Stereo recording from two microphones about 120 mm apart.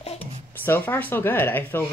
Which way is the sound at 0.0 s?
55° left (ahead or behind).